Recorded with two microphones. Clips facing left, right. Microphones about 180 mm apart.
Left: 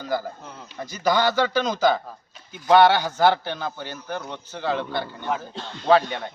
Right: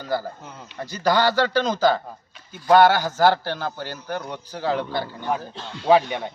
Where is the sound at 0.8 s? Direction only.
15° left (ahead or behind).